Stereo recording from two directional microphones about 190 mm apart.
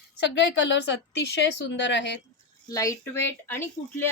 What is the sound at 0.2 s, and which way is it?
A woman's voice, 65° left (ahead or behind).